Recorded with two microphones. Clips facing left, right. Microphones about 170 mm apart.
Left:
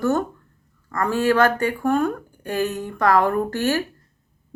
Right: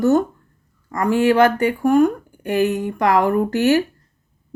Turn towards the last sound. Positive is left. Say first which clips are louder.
# right 5 dB
turn(degrees=-15)  # may be behind; listen again after turning